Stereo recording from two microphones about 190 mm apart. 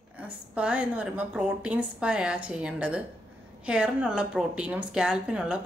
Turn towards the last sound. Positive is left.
turn(degrees=-5)  # may be behind; listen again after turning